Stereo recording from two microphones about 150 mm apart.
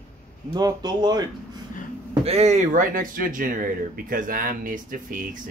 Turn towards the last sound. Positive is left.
turn(degrees=-60)  # may be behind; listen again after turning